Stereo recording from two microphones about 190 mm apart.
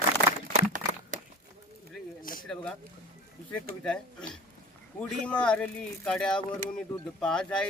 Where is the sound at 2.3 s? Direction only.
45° left (ahead or behind).